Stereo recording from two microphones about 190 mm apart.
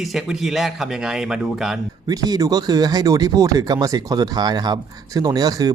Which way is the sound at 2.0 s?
20° right (ahead or behind).